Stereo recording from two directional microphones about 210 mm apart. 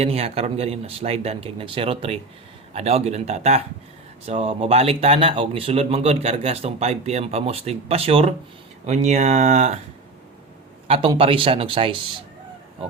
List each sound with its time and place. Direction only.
0.0 s a man's voice: 30° right (ahead or behind)
10.8 s a man's voice: 25° right (ahead or behind)